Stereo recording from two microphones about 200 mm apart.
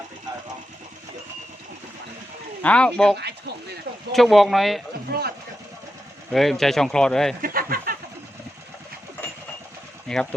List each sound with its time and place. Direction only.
2.6 s speech: 5° left (ahead or behind)
3.2 s speech: 55° right (ahead or behind)
4.1 s speech: centre (ahead or behind)
5.0 s speech: 50° right (ahead or behind)
6.3 s speech: centre (ahead or behind)
7.4 s a sound: 45° right (ahead or behind)
10.1 s speech: 5° left (ahead or behind)